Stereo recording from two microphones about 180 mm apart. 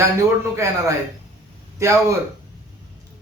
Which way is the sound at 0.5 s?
15° right (ahead or behind).